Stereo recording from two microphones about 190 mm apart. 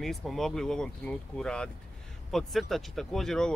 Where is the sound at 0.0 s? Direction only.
Centre (ahead or behind).